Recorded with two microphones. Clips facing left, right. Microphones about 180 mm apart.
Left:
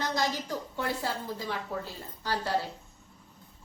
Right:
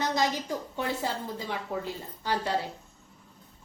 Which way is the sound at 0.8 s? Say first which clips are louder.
Right 1 dB; 20° right (ahead or behind).